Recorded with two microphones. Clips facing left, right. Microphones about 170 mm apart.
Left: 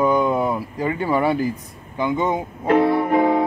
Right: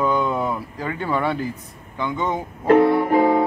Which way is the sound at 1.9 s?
15° left (ahead or behind).